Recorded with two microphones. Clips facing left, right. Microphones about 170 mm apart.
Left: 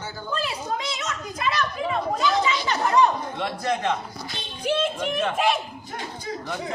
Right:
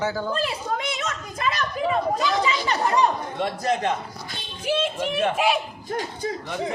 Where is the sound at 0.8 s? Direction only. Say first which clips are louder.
Right 1 dB; 55° right (ahead or behind).